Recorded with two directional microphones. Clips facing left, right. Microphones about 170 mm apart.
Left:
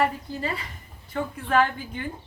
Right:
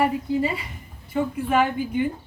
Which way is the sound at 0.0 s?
10° right (ahead or behind).